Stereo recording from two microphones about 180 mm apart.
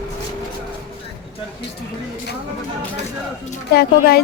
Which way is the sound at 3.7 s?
60° left (ahead or behind).